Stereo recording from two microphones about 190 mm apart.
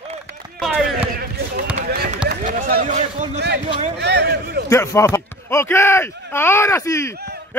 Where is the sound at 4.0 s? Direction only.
60° right (ahead or behind).